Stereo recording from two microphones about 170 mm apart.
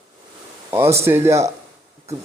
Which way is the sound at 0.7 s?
15° right (ahead or behind).